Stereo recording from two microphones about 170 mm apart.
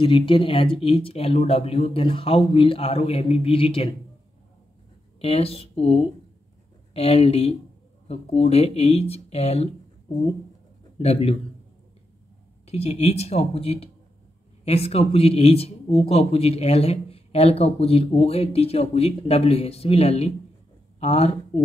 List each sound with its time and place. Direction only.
0.0 s speech: 30° left (ahead or behind)
5.2 s speech: 35° left (ahead or behind)
11.0 s speech: 35° left (ahead or behind)
12.6 s speech: 40° left (ahead or behind)